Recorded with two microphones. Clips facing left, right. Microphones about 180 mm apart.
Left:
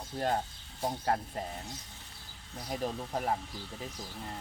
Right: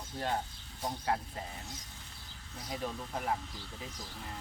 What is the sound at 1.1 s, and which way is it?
Speech, 50° left (ahead or behind).